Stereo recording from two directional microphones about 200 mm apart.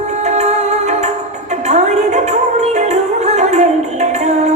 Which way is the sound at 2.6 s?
35° right (ahead or behind).